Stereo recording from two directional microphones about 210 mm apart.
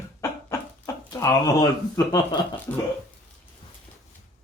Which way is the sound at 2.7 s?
10° left (ahead or behind).